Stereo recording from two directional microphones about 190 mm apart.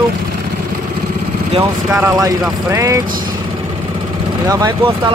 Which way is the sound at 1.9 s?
5° right (ahead or behind).